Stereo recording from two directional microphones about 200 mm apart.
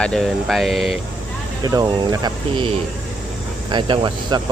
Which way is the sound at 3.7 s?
25° right (ahead or behind).